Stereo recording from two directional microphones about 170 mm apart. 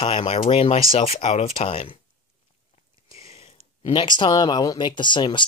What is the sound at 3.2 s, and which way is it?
Speech, 35° left (ahead or behind).